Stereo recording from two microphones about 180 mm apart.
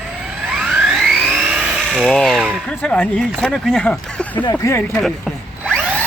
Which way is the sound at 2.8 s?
5° left (ahead or behind).